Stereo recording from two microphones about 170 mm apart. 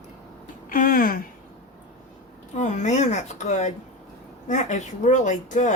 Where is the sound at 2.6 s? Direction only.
45° left (ahead or behind).